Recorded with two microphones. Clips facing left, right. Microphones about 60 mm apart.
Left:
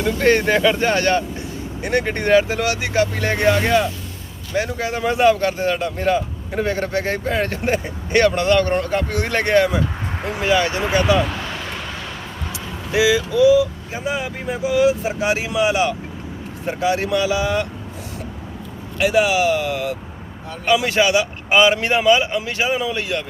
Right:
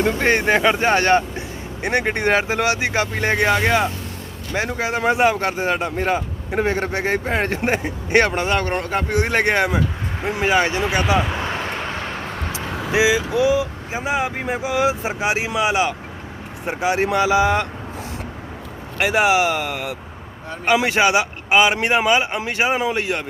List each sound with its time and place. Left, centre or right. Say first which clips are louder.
0.2 s speech: left 5 dB; right
11.4 s vehicle: right 4 dB; right
12.9 s speech: left 1 dB; right
18.9 s speech: even; right
21.5 s speech: left 1 dB; centre
21.8 s speech: left 1 dB; right